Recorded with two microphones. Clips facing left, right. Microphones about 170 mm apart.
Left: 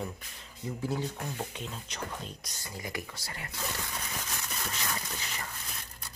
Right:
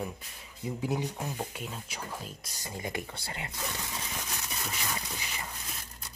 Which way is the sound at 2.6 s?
25° right (ahead or behind).